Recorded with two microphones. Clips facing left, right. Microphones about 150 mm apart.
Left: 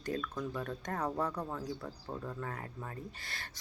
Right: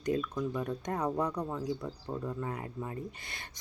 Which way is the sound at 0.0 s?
15° right (ahead or behind).